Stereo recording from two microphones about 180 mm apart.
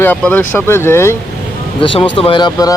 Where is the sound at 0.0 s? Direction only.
10° left (ahead or behind).